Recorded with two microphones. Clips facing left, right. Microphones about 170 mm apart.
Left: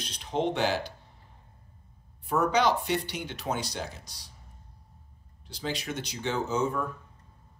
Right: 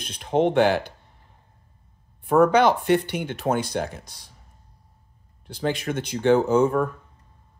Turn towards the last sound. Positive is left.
turn(degrees=-55)  # may be behind; listen again after turning